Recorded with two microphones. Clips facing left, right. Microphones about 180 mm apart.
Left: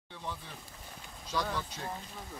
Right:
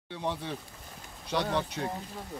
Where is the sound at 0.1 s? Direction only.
70° right (ahead or behind).